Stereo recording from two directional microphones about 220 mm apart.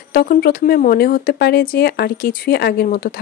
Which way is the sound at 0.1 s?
40° left (ahead or behind).